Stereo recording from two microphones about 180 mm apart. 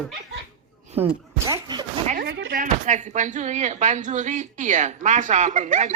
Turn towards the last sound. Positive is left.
turn(degrees=-40)  # may be behind; listen again after turning